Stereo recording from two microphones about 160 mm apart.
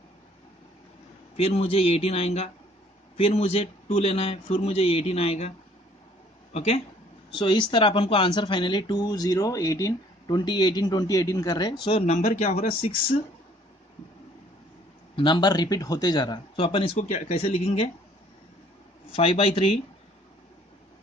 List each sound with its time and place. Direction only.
1.3 s speech: 40° left (ahead or behind)
6.5 s speech: 40° left (ahead or behind)
7.3 s speech: 30° left (ahead or behind)
12.2 s speech: 45° left (ahead or behind)
15.1 s speech: 30° left (ahead or behind)
19.1 s speech: 35° left (ahead or behind)